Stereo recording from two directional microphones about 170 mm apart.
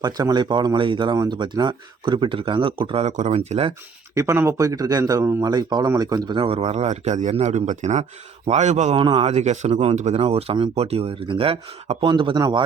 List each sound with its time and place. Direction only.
0.0 s a man's voice: 25° right (ahead or behind)
4.1 s a man's voice: 15° right (ahead or behind); by 9.0 s 40° right (ahead or behind)
9.0 s speech: 30° right (ahead or behind)